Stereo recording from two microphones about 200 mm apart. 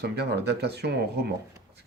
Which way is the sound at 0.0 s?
55° right (ahead or behind).